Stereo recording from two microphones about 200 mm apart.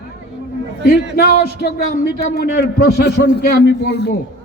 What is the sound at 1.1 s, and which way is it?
A man's voice, 50° left (ahead or behind).